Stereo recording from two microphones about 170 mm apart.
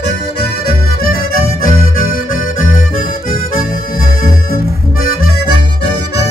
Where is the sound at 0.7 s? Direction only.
55° left (ahead or behind).